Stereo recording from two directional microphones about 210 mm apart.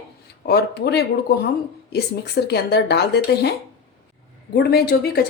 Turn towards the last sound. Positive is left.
turn(degrees=45)  # may be behind; listen again after turning